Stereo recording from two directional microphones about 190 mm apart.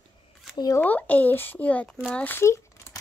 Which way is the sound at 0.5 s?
20° left (ahead or behind).